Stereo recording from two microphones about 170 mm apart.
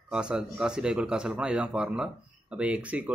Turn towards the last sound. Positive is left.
turn(degrees=-10)  # may be behind; listen again after turning